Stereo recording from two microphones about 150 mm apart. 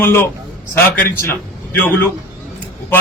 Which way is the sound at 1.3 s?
15° left (ahead or behind).